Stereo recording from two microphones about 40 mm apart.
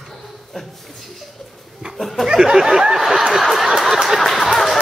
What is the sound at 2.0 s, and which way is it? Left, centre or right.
Speech, centre.